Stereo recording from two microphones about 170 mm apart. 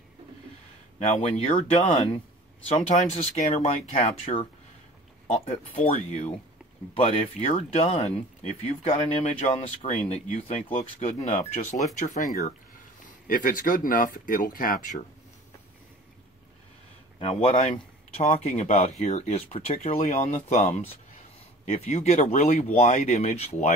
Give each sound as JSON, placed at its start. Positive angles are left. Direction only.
{"t": 0.9, "sound": "speech", "side_deg": 40}
{"t": 17.2, "sound": "speech", "side_deg": 35}